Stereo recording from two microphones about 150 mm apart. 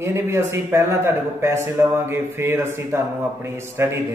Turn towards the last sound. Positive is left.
turn(degrees=-15)  # may be behind; listen again after turning